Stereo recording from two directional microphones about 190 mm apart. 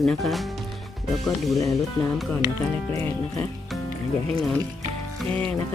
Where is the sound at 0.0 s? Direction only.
Centre (ahead or behind).